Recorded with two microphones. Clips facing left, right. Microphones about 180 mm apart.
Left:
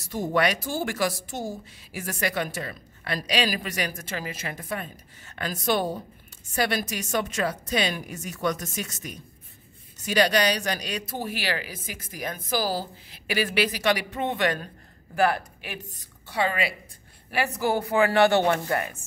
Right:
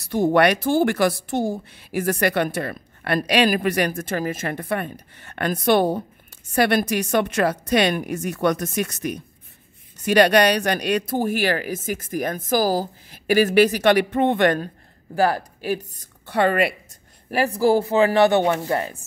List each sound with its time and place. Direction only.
0.0 s speech: 65° right (ahead or behind)
15.1 s speech: 35° right (ahead or behind)
16.0 s a woman's voice: 55° right (ahead or behind)
17.3 s speech: 35° right (ahead or behind); by 18.6 s 15° right (ahead or behind)
18.7 s speech: 30° right (ahead or behind)